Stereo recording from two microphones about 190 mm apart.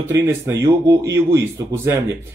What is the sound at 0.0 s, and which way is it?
Speech, 15° right (ahead or behind).